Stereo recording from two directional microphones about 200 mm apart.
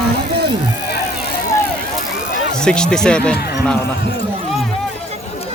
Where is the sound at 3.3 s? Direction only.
50° left (ahead or behind).